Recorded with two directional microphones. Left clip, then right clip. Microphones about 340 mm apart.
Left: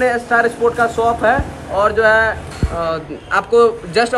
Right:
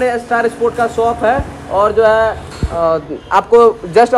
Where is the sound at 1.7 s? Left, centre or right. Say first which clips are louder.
Right 2 dB; centre.